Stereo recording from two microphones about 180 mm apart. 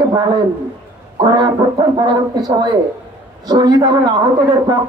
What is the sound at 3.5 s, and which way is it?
Speech, 25° right (ahead or behind).